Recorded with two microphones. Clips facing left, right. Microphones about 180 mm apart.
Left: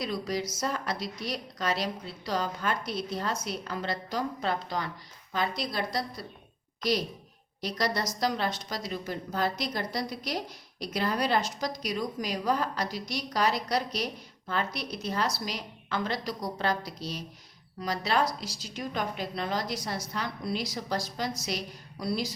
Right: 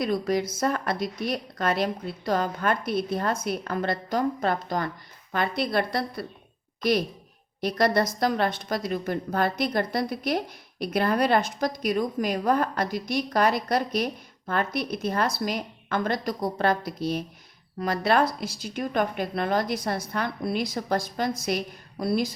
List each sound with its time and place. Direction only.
0.0 s speech: 55° right (ahead or behind)